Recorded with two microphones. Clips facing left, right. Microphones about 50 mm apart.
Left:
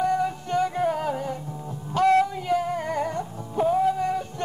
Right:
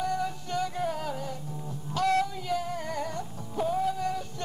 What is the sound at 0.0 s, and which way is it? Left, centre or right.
Music, left.